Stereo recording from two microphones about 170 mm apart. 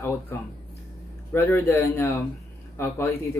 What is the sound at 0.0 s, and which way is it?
Speech, 15° left (ahead or behind).